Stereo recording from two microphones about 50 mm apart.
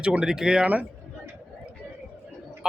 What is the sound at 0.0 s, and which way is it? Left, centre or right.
Speech, centre.